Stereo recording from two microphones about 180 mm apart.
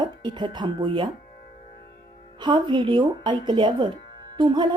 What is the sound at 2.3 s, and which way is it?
Speech, 25° right (ahead or behind).